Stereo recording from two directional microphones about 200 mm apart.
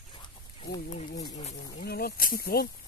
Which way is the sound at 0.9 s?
35° left (ahead or behind).